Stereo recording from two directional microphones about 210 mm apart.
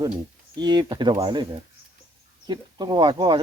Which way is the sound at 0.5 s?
20° right (ahead or behind).